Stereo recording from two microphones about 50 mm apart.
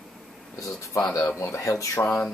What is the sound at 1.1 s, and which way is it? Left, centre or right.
Speech, left.